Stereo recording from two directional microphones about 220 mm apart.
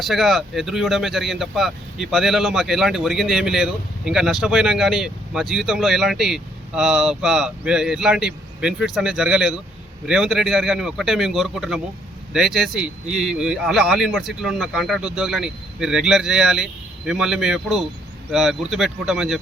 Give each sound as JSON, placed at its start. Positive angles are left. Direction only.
{"t": 0.0, "sound": "speech", "side_deg": 0}